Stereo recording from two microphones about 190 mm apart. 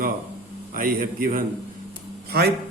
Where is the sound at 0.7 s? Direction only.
50° right (ahead or behind).